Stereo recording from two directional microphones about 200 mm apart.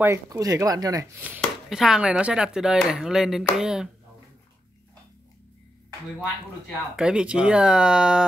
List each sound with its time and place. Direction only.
0.0 s speech: 15° right (ahead or behind)
7.0 s speech: 5° right (ahead or behind)